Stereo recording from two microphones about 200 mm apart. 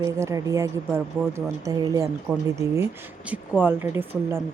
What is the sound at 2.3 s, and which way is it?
Speech, 5° right (ahead or behind).